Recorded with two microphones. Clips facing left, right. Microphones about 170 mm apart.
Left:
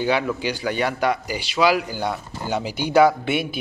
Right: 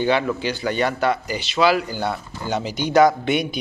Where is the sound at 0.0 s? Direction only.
10° left (ahead or behind).